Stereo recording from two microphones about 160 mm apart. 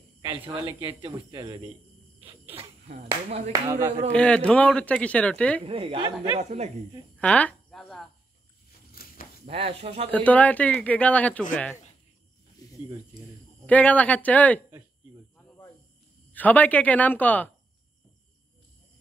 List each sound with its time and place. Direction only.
0.2 s a sound: 30° right (ahead or behind)
0.8 s speech: 30° right (ahead or behind)
2.5 s speech: 40° right (ahead or behind)
3.5 s speech: 20° right (ahead or behind)
4.1 s speech: 5° left (ahead or behind)
5.6 s speech: 35° right (ahead or behind)
7.2 s a sound: 10° left (ahead or behind)
8.9 s a sound: 65° left (ahead or behind)
9.5 s speech: 40° right (ahead or behind)
10.1 s speech: 10° left (ahead or behind)
12.6 s snake: 20° left (ahead or behind)
13.7 s speech: 10° left (ahead or behind)
16.3 s speech: 10° left (ahead or behind)